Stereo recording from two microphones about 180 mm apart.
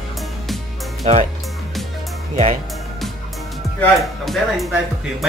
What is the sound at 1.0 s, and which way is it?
Speech, 35° right (ahead or behind).